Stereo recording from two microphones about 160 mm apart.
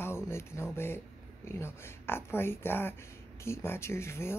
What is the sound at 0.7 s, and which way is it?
Speech, 15° left (ahead or behind).